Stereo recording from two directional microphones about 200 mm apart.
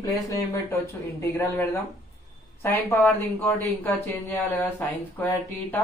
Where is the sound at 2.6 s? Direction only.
10° left (ahead or behind).